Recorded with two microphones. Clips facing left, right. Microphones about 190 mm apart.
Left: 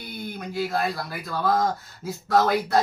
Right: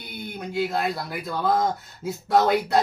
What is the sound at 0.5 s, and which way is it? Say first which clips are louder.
Speech: right 1 dB; 20° right (ahead or behind).